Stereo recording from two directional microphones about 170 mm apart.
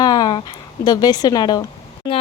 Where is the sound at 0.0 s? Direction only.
25° left (ahead or behind).